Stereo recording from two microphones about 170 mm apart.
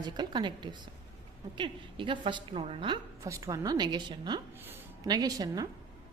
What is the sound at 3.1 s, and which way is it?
A woman's voice, 20° right (ahead or behind).